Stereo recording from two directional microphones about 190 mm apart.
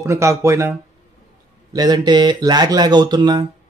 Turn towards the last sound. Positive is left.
turn(degrees=-20)  # may be behind; listen again after turning